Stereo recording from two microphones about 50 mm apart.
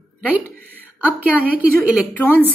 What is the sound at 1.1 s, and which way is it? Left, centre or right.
Speech, right.